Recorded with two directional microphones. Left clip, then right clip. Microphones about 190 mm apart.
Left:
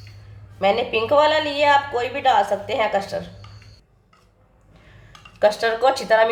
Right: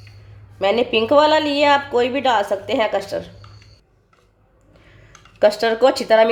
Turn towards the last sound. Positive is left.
turn(degrees=-45)  # may be behind; listen again after turning